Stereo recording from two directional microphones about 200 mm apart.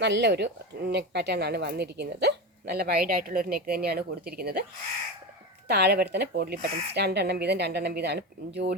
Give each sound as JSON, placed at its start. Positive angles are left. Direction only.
{"t": 0.0, "sound": "a woman's voice", "side_deg": -60}
{"t": 5.6, "sound": "speech", "side_deg": -55}